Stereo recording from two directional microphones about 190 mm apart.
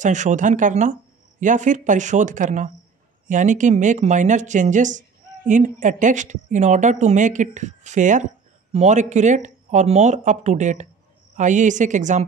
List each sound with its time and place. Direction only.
0.0 s speech: 40° right (ahead or behind)